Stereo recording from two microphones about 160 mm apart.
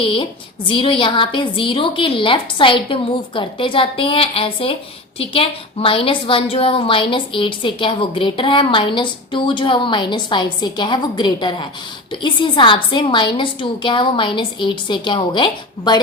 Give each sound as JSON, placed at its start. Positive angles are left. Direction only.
{"t": 0.0, "sound": "a woman's voice", "side_deg": 35}